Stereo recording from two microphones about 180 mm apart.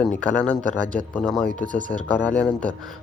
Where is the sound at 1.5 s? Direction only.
45° right (ahead or behind).